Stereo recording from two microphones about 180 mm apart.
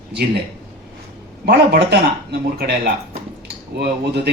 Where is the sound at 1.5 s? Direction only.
65° right (ahead or behind).